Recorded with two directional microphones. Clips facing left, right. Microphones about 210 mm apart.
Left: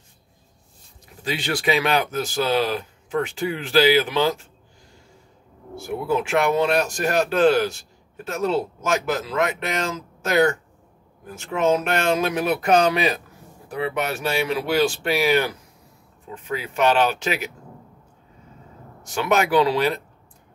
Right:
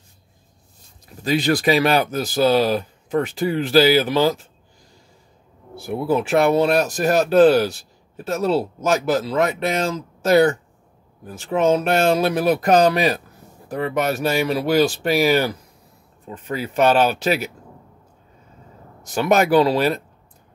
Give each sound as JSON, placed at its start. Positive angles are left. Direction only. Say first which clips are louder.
{"t": 1.2, "sound": "speech", "louder": "right 6 dB", "side_deg": -40}
{"t": 6.1, "sound": "speech", "louder": "right 4 dB", "side_deg": -35}
{"t": 16.4, "sound": "speech", "louder": "right 3 dB", "side_deg": -40}
{"t": 19.1, "sound": "speech", "louder": "right 4 dB", "side_deg": -40}